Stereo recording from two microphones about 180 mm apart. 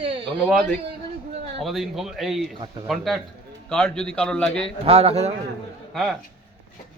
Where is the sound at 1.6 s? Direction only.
Centre (ahead or behind).